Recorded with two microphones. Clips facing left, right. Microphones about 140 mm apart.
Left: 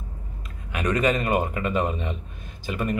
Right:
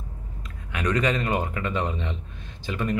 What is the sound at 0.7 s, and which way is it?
A man's voice, 15° left (ahead or behind).